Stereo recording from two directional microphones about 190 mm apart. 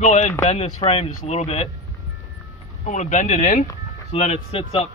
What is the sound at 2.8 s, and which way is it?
Speech, 40° left (ahead or behind).